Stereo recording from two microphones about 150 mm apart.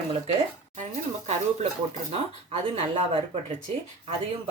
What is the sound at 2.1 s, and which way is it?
Speech, 45° right (ahead or behind).